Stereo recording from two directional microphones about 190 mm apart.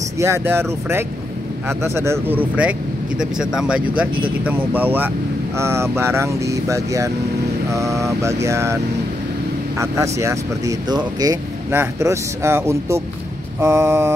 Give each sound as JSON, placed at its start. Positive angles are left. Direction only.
{"t": 0.2, "sound": "speech", "side_deg": -15}
{"t": 9.8, "sound": "speech", "side_deg": -15}